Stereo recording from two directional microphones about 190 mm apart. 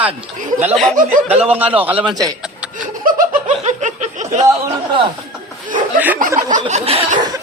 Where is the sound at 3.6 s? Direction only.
40° right (ahead or behind).